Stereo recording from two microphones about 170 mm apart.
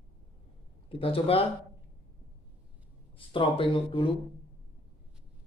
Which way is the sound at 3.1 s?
30° left (ahead or behind).